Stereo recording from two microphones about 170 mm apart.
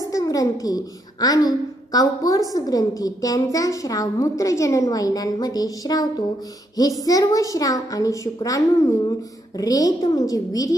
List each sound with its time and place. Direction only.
0.1 s a woman's voice: 20° left (ahead or behind)